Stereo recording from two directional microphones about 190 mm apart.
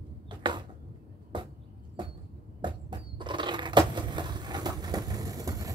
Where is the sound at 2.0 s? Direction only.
25° right (ahead or behind).